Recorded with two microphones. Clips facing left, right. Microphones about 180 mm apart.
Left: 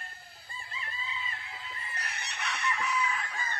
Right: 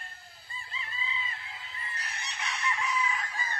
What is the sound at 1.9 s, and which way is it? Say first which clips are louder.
Chicken: even; 65° left (ahead or behind).